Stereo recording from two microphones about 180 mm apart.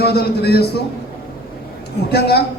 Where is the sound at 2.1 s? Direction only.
65° left (ahead or behind).